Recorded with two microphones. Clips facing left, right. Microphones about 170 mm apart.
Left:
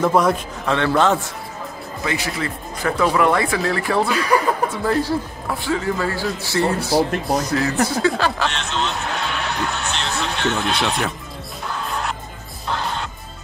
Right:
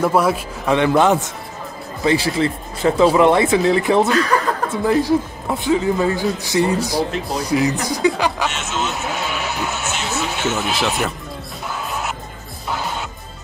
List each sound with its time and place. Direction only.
0.0 s speech: 5° right (ahead or behind)
2.0 s speech: 30° right (ahead or behind)
4.1 s speech: 10° left (ahead or behind)
4.8 s speech: 20° right (ahead or behind)
8.5 s speech: 5° right (ahead or behind)
11.7 s music: 5° right (ahead or behind)